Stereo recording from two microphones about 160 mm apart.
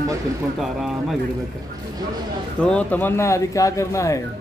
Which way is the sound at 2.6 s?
5° left (ahead or behind).